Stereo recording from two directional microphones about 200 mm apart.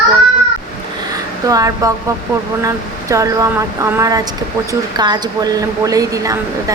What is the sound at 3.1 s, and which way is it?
A woman's voice, 15° right (ahead or behind).